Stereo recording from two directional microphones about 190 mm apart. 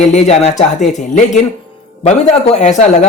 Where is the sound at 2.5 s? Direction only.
35° left (ahead or behind).